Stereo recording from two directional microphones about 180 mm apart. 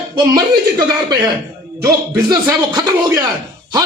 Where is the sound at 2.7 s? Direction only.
20° right (ahead or behind).